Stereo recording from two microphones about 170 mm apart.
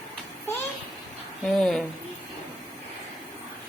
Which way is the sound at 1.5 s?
5° left (ahead or behind).